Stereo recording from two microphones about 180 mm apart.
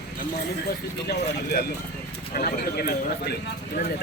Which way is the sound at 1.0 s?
60° left (ahead or behind).